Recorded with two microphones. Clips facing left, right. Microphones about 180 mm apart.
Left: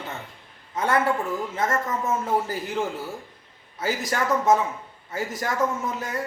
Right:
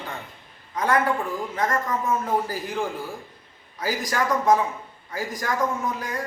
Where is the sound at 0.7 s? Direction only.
25° left (ahead or behind).